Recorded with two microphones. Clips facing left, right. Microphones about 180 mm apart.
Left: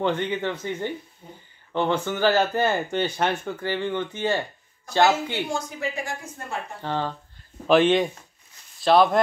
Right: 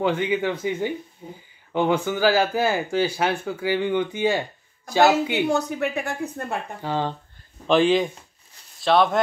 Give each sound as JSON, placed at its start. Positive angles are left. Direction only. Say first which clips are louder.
{"t": 0.0, "sound": "speech", "louder": "right 2 dB", "side_deg": -5}
{"t": 5.5, "sound": "a woman's voice", "louder": "right 6 dB", "side_deg": -65}
{"t": 6.8, "sound": "speech", "louder": "right 1 dB", "side_deg": -10}
{"t": 7.6, "sound": "speech", "louder": "even", "side_deg": 0}